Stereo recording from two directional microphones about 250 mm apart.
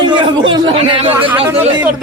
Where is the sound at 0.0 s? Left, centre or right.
Centre.